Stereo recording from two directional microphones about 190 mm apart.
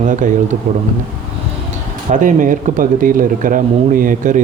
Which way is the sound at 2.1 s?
45° right (ahead or behind).